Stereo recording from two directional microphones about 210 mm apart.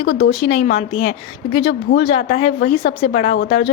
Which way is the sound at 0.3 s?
30° left (ahead or behind).